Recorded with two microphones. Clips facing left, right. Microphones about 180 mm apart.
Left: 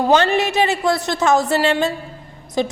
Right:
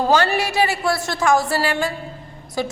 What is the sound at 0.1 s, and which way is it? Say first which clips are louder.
Speech: left 5 dB; 20° left (ahead or behind).